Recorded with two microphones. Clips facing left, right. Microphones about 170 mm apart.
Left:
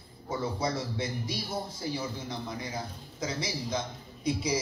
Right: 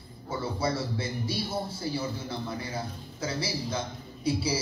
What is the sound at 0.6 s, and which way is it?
Speech, 20° left (ahead or behind).